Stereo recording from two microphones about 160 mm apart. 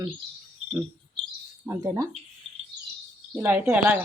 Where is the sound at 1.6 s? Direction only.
15° right (ahead or behind).